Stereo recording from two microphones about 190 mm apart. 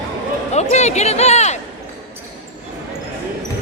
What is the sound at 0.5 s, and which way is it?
Speech, 35° left (ahead or behind).